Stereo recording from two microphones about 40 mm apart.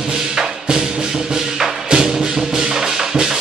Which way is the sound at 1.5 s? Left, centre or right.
Centre.